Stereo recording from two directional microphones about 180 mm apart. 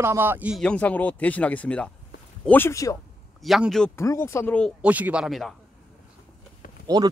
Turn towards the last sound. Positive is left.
turn(degrees=-20)  # may be behind; listen again after turning